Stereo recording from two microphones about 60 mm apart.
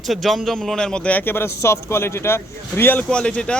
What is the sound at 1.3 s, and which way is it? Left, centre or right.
A man's voice, left.